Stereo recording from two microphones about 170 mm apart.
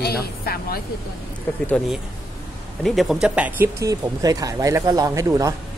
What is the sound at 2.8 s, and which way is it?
Speech, centre (ahead or behind).